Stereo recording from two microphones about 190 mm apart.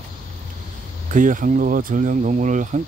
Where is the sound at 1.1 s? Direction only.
45° right (ahead or behind).